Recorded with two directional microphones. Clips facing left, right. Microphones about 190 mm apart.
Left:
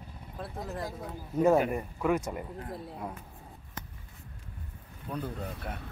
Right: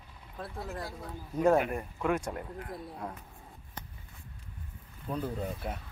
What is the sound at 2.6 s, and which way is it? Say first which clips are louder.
Speech: left 1 dB; 30° left (ahead or behind).